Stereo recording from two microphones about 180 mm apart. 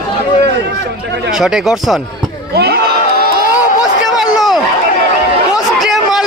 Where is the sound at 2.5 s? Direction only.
65° right (ahead or behind).